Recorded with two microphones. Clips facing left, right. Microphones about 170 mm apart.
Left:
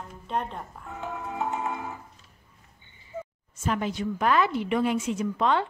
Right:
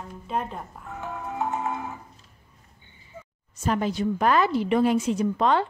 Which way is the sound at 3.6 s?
35° right (ahead or behind).